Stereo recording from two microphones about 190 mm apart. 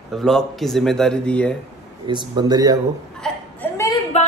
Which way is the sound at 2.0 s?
25° right (ahead or behind).